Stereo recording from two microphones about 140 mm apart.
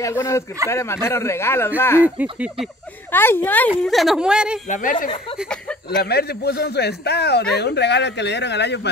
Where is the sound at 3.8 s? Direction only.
Centre (ahead or behind).